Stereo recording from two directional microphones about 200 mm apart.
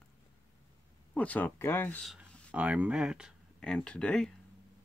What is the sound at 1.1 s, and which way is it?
Speech, 5° left (ahead or behind).